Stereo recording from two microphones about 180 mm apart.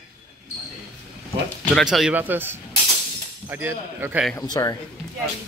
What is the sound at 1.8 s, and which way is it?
A man's voice, centre (ahead or behind).